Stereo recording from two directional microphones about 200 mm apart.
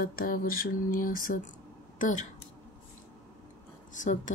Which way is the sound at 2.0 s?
40° left (ahead or behind).